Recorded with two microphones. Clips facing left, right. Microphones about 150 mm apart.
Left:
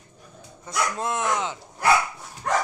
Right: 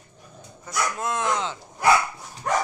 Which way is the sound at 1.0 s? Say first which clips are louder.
Right 1 dB; 20° left (ahead or behind).